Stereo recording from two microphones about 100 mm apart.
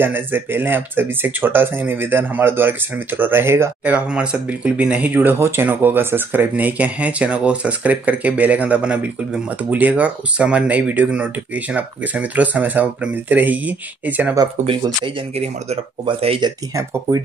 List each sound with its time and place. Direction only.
0.0 s speech: 20° right (ahead or behind)
15.0 s speech: 75° right (ahead or behind)